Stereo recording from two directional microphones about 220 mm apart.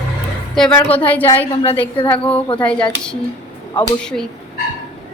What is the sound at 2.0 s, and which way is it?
Speech, 20° left (ahead or behind).